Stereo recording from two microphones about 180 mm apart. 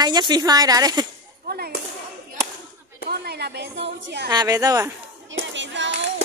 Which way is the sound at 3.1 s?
65° right (ahead or behind).